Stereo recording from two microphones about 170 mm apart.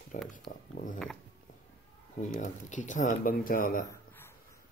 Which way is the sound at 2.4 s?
50° left (ahead or behind).